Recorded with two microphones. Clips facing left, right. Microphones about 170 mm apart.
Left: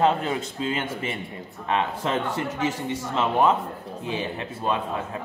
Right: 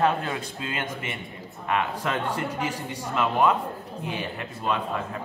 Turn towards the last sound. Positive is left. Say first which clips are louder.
# left 2 dB
turn(degrees=25)  # may be behind; listen again after turning